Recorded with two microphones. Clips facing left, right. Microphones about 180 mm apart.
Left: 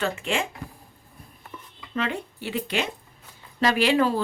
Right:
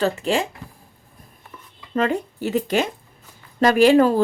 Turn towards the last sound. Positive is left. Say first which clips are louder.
# right 7 dB
turn(degrees=-45)  # may be behind; listen again after turning